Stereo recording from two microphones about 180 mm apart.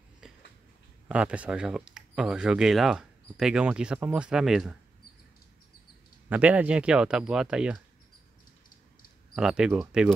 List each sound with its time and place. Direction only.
0.2 s a sound: 5° right (ahead or behind)
1.0 s speech: 5° right (ahead or behind)
6.2 s speech: 10° right (ahead or behind)
9.3 s speech: 5° right (ahead or behind)